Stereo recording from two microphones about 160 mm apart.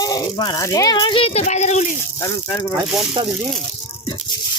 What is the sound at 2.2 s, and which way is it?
Speech, 20° left (ahead or behind).